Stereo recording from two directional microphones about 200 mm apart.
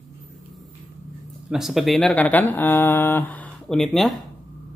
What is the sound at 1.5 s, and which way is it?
Speech, centre (ahead or behind).